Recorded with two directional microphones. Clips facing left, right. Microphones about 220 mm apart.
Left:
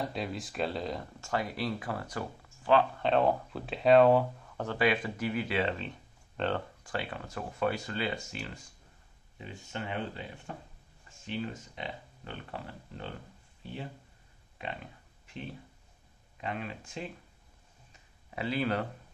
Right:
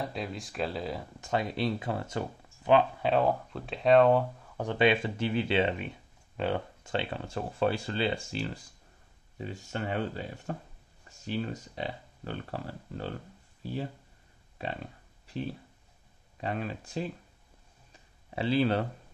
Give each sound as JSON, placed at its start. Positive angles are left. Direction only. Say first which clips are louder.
{"t": 0.0, "sound": "speech", "louder": "even", "side_deg": 0}
{"t": 1.2, "sound": "speech", "louder": "right 4 dB", "side_deg": -20}
{"t": 3.0, "sound": "speech", "louder": "even", "side_deg": -5}
{"t": 4.6, "sound": "speech", "louder": "right 3 dB", "side_deg": -20}
{"t": 6.8, "sound": "speech", "louder": "right 4 dB", "side_deg": -25}
{"t": 13.6, "sound": "a sound", "louder": "right 6 dB", "side_deg": -40}
{"t": 15.2, "sound": "speech", "louder": "right 7 dB", "side_deg": -35}
{"t": 18.3, "sound": "speech", "louder": "right 5 dB", "side_deg": -30}